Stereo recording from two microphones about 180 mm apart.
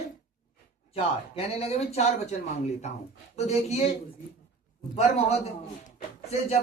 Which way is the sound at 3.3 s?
35° left (ahead or behind).